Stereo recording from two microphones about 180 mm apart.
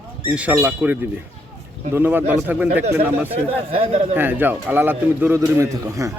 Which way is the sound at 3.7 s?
35° right (ahead or behind).